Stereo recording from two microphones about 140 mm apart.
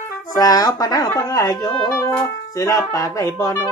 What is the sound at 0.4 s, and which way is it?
Speech, 25° left (ahead or behind).